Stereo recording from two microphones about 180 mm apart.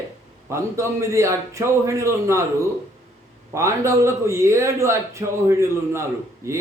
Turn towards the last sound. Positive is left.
turn(degrees=-15)  # may be behind; listen again after turning